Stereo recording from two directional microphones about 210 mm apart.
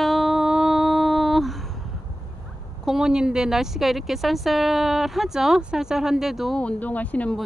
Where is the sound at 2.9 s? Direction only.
5° right (ahead or behind).